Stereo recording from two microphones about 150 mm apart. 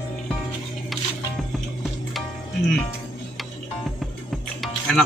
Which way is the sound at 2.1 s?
5° left (ahead or behind).